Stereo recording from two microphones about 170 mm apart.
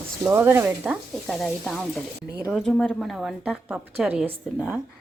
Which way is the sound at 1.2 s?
Centre (ahead or behind).